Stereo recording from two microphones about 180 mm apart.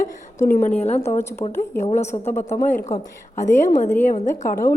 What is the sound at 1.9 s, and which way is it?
Speech, 35° left (ahead or behind).